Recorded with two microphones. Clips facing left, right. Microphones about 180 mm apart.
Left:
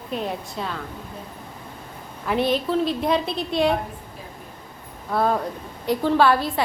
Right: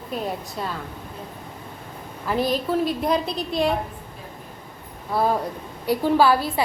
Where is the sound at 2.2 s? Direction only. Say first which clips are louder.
Left 1 dB; centre (ahead or behind).